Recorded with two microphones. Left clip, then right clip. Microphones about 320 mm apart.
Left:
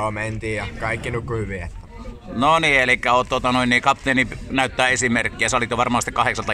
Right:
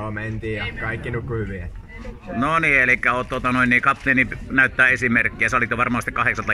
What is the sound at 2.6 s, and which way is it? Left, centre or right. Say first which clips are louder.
A man's voice: even; left.